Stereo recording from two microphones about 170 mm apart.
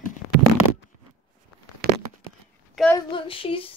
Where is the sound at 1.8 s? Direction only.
70° right (ahead or behind).